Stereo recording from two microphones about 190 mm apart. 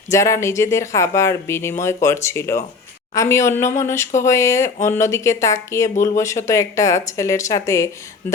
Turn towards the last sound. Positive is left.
turn(degrees=15)  # may be behind; listen again after turning